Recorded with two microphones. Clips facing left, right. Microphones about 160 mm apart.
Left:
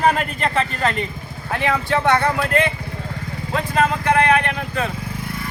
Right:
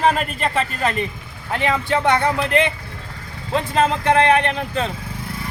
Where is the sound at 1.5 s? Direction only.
20° right (ahead or behind).